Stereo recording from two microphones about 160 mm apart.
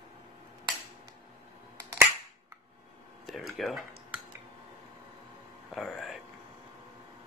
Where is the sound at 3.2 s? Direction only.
Centre (ahead or behind).